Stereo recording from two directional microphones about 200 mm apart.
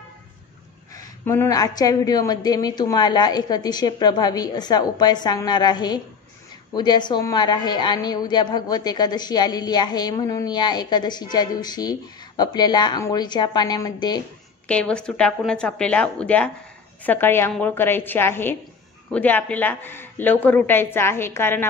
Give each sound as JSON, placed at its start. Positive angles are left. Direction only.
{"t": 0.9, "sound": "a woman's voice", "side_deg": 10}
{"t": 14.7, "sound": "a woman's voice", "side_deg": 5}